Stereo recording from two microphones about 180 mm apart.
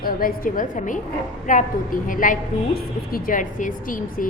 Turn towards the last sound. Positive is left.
turn(degrees=45)  # may be behind; listen again after turning